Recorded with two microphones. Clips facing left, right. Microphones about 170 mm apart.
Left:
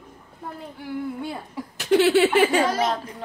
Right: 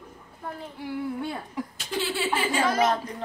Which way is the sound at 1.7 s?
70° left (ahead or behind).